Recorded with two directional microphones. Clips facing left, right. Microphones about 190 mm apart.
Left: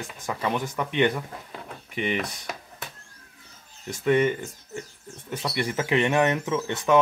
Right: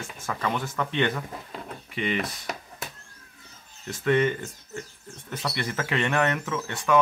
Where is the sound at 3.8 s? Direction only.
15° left (ahead or behind).